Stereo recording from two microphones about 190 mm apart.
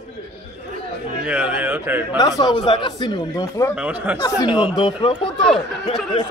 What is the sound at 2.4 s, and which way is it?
Speech, 25° left (ahead or behind).